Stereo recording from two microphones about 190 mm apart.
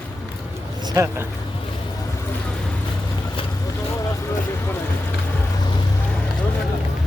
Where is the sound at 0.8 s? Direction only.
20° right (ahead or behind).